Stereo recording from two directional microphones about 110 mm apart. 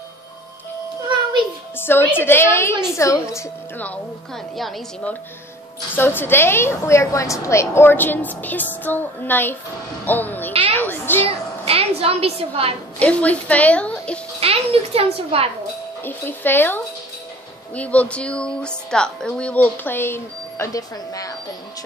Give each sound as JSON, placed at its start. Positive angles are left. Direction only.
{"t": 1.8, "sound": "a woman's voice", "side_deg": 20}
{"t": 3.7, "sound": "a woman's voice", "side_deg": 15}
{"t": 4.6, "sound": "a woman's voice", "side_deg": 0}
{"t": 5.9, "sound": "a woman's voice", "side_deg": 20}
{"t": 10.7, "sound": "a sound", "side_deg": 20}
{"t": 11.2, "sound": "a sound", "side_deg": -60}
{"t": 13.0, "sound": "a woman's voice", "side_deg": 10}
{"t": 14.4, "sound": "a child's voice", "side_deg": -60}
{"t": 16.0, "sound": "a woman's voice", "side_deg": 20}